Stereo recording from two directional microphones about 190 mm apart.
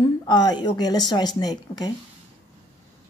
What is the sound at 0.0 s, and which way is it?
A woman's voice, 20° left (ahead or behind).